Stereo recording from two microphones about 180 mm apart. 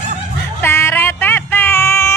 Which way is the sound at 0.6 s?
15° left (ahead or behind).